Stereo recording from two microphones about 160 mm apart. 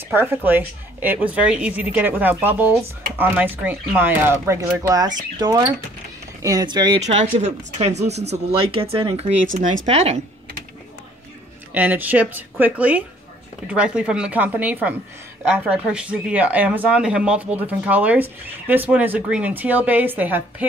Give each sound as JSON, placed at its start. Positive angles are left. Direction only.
{"t": 0.1, "sound": "speech", "side_deg": -15}
{"t": 7.0, "sound": "speech", "side_deg": -45}
{"t": 9.5, "sound": "speech", "side_deg": -55}
{"t": 9.8, "sound": "speech", "side_deg": -40}
{"t": 11.7, "sound": "speech", "side_deg": -10}